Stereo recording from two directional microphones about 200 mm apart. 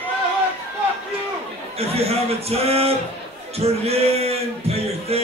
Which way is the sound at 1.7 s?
30° right (ahead or behind).